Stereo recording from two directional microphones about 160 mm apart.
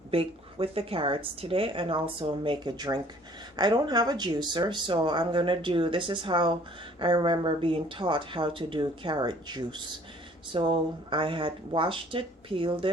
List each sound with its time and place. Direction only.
0.1 s speech: 35° right (ahead or behind)